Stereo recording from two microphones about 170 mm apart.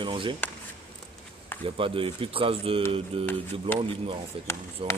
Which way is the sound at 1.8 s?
30° right (ahead or behind).